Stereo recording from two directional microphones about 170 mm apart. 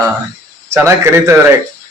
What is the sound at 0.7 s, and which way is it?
Speech, 15° right (ahead or behind).